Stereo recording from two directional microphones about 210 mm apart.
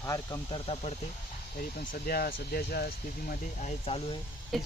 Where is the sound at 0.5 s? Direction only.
30° left (ahead or behind).